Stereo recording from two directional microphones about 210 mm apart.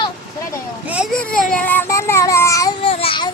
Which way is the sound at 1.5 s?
10° left (ahead or behind).